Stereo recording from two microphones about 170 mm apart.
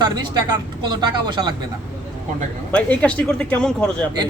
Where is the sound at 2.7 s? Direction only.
5° left (ahead or behind).